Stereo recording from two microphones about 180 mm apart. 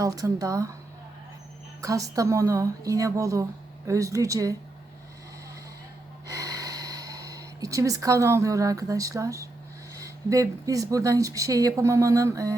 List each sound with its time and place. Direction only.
0.0 s speech: 20° right (ahead or behind)
1.8 s speech: 20° right (ahead or behind)
6.2 s gasp: 20° right (ahead or behind)
9.9 s speech: 20° right (ahead or behind)